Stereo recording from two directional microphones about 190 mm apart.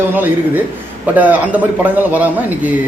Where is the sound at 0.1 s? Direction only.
10° right (ahead or behind).